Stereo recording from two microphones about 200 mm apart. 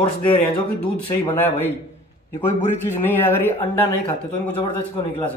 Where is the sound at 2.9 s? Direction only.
10° left (ahead or behind).